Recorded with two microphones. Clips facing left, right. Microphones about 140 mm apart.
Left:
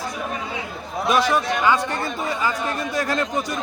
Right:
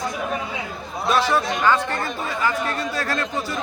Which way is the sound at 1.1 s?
15° left (ahead or behind).